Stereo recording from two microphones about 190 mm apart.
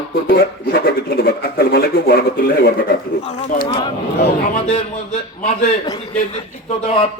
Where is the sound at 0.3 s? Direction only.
50° left (ahead or behind).